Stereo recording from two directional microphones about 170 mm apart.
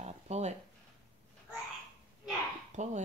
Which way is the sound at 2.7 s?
45° right (ahead or behind).